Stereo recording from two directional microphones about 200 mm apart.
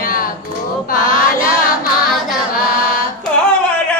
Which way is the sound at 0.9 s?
45° left (ahead or behind).